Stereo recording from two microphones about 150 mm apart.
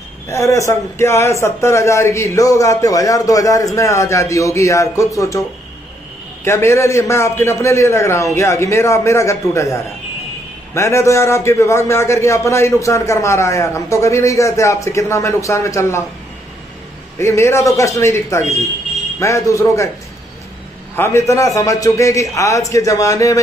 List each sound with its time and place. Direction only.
0.3 s a man's voice: 20° left (ahead or behind)
6.4 s a man's voice: 20° left (ahead or behind)
17.2 s a man's voice: 20° left (ahead or behind)
20.9 s a man's voice: 15° left (ahead or behind)